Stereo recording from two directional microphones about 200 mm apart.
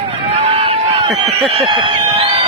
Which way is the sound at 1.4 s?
25° right (ahead or behind).